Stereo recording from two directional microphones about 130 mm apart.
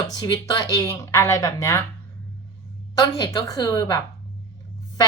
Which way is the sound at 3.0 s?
30° left (ahead or behind).